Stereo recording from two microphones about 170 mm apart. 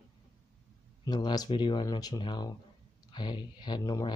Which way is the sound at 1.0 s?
25° left (ahead or behind).